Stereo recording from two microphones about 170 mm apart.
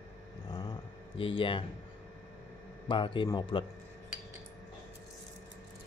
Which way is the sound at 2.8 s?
30° left (ahead or behind).